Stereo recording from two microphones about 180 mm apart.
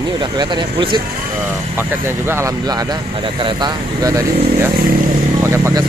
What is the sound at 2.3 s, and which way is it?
Speech, 15° right (ahead or behind).